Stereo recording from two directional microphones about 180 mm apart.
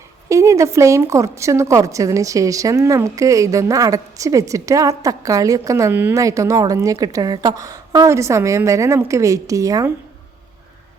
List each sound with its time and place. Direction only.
0.3 s a woman's voice: 15° right (ahead or behind)